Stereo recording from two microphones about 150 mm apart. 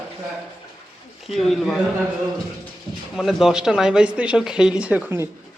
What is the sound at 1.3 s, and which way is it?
Speech, centre (ahead or behind).